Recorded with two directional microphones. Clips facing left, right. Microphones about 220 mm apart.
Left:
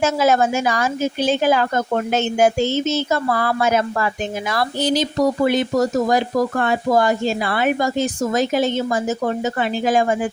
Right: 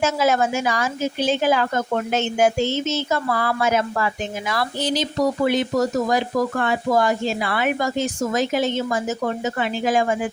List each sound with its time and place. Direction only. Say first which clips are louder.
0.0 s a woman's voice: left 3 dB; 40° left (ahead or behind)